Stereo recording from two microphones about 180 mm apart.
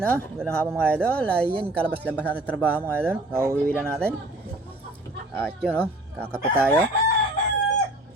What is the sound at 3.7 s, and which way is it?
Speech, 5° left (ahead or behind).